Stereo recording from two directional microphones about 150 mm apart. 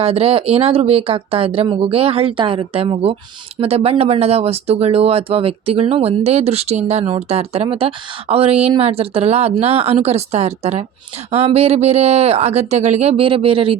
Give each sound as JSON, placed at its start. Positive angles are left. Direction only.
{"t": 0.0, "sound": "speech", "side_deg": -40}